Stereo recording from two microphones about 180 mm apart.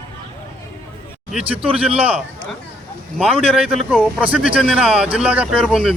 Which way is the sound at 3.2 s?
5° right (ahead or behind).